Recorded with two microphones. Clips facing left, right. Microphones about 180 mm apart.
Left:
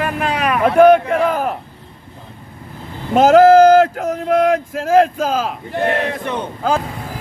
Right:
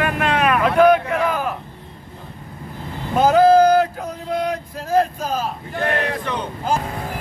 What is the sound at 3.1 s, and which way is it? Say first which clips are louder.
Male singing: left 5 dB; 85° left.